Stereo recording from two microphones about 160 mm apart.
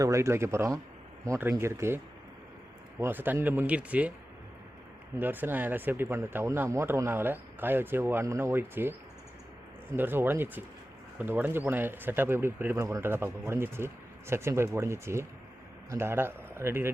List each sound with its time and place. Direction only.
0.0 s speech: 20° right (ahead or behind)
3.0 s speech: 10° right (ahead or behind)
5.2 s speech: 10° right (ahead or behind)